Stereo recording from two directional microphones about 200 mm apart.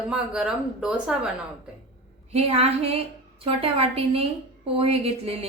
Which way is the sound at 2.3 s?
30° right (ahead or behind).